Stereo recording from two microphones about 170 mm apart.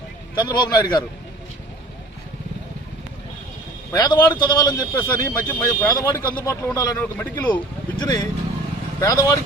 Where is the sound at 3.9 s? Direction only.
25° left (ahead or behind).